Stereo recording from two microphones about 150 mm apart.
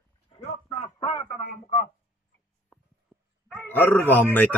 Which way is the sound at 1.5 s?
75° left (ahead or behind).